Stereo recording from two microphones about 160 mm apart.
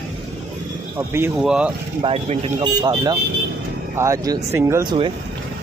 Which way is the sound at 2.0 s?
35° right (ahead or behind).